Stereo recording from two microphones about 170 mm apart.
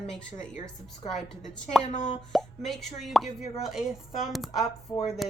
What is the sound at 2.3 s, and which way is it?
Speech, centre (ahead or behind).